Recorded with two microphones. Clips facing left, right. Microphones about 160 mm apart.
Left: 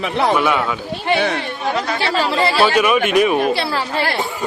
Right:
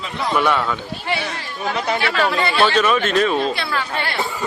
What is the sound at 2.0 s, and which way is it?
Speech, 30° left (ahead or behind).